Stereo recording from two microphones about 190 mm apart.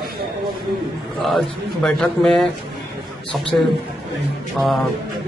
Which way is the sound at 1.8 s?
5° left (ahead or behind).